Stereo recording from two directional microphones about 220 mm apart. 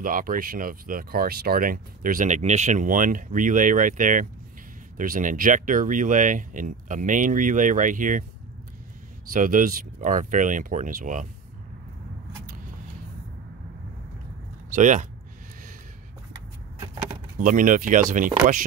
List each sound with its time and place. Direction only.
0.0 s speech: 40° right (ahead or behind)
9.3 s speech: 40° right (ahead or behind)
14.7 s speech: 35° right (ahead or behind)
17.4 s speech: 35° right (ahead or behind)